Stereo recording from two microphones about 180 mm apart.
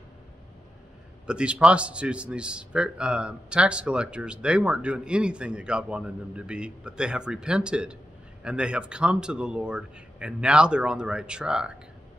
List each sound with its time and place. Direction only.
1.2 s a man's voice: 5° right (ahead or behind)